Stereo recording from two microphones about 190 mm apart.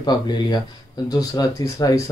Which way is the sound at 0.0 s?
20° left (ahead or behind).